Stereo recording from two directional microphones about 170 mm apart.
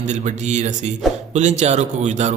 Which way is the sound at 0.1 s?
45° right (ahead or behind).